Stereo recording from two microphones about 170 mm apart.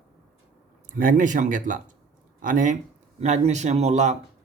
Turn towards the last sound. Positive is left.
turn(degrees=-45)  # may be behind; listen again after turning